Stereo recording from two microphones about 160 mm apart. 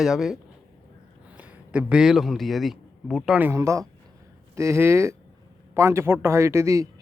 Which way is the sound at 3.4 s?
15° right (ahead or behind).